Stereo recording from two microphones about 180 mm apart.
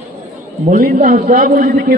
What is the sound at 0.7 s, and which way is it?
A man's voice, 50° right (ahead or behind).